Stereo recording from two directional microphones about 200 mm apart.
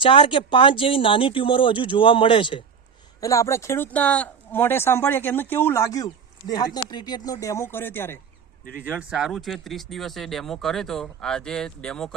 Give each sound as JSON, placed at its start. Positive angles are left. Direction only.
{"t": 0.0, "sound": "speech", "side_deg": 25}
{"t": 8.7, "sound": "speech", "side_deg": -10}